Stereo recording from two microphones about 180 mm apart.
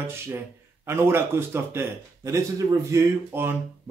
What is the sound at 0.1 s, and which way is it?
Speech, 15° right (ahead or behind).